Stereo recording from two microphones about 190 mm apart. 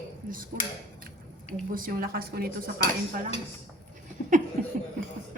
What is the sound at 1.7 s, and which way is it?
A woman's voice, 50° right (ahead or behind).